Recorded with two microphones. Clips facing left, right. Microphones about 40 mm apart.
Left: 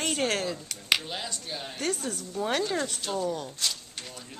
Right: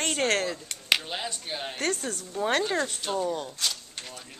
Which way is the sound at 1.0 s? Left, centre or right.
Right.